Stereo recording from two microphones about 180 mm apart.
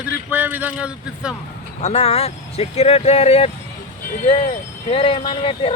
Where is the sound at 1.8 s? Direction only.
35° left (ahead or behind).